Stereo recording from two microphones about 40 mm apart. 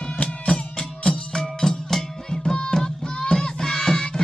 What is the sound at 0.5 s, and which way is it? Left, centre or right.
Music, left.